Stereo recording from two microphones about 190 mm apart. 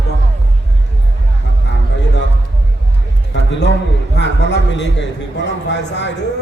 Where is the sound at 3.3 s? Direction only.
70° left (ahead or behind).